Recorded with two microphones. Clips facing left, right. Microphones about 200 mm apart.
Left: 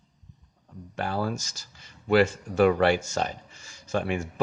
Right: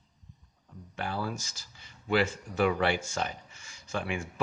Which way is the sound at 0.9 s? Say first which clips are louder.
Left 5 dB; 45° left (ahead or behind).